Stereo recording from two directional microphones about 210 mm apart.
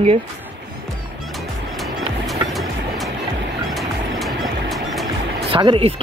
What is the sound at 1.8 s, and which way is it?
Music, centre (ahead or behind).